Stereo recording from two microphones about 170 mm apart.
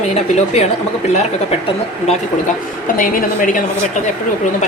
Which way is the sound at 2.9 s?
55° left (ahead or behind).